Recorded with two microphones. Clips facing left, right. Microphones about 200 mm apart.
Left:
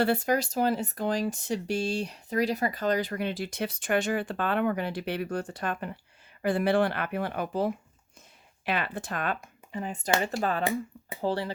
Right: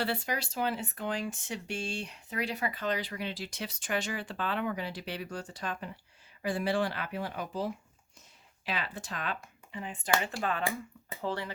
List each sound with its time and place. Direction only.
0.0 s speech: 45° left (ahead or behind)